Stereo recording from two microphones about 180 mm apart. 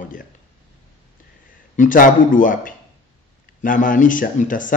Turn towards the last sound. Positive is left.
turn(degrees=50)  # may be behind; listen again after turning